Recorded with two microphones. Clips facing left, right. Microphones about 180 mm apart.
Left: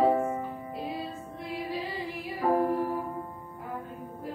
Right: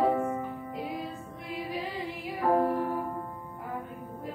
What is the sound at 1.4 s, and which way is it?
Music, 15° right (ahead or behind).